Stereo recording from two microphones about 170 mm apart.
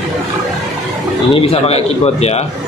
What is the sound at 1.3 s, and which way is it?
Speech, 35° left (ahead or behind).